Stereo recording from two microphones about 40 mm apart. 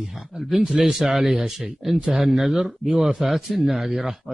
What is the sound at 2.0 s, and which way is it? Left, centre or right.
Speech, centre.